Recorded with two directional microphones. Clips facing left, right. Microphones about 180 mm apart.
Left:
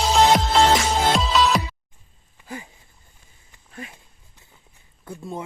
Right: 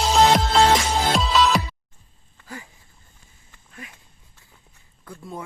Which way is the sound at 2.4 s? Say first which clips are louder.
Left 3 dB; 15° left (ahead or behind).